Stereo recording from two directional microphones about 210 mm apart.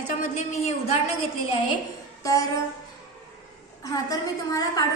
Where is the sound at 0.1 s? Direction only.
35° left (ahead or behind).